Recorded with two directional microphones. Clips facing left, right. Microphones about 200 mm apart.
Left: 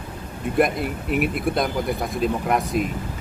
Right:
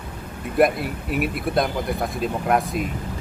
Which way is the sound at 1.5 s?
Centre (ahead or behind).